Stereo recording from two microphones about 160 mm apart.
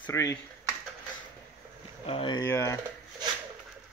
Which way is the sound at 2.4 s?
15° left (ahead or behind).